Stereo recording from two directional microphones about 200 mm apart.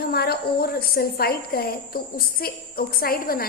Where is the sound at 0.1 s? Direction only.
50° left (ahead or behind).